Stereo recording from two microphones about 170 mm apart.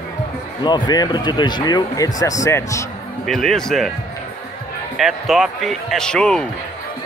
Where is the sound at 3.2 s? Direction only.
Centre (ahead or behind).